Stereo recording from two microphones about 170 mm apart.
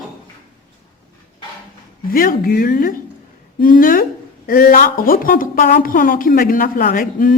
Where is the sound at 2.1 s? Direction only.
55° left (ahead or behind).